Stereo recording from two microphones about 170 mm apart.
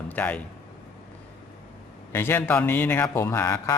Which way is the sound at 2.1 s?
15° left (ahead or behind).